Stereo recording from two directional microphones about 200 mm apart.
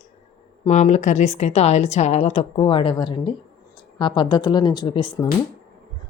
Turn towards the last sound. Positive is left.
turn(degrees=25)  # may be behind; listen again after turning